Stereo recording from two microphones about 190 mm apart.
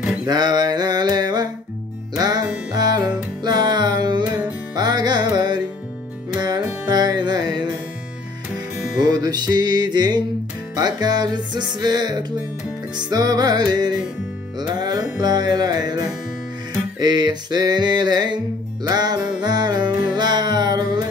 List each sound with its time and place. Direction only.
0.3 s a sound: 20° right (ahead or behind)
2.1 s music: 20° right (ahead or behind)
9.0 s music: 20° right (ahead or behind)